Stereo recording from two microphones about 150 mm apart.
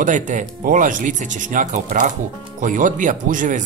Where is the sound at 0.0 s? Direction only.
55° right (ahead or behind).